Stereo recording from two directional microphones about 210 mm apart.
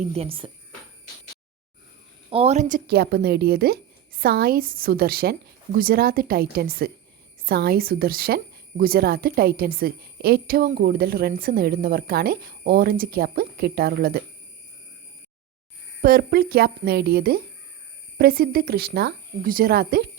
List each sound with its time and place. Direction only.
0.0 s a woman's voice: 30° right (ahead or behind)
2.3 s a woman's voice: 30° right (ahead or behind); by 14.2 s 45° right (ahead or behind)
16.0 s a woman's voice: 45° right (ahead or behind)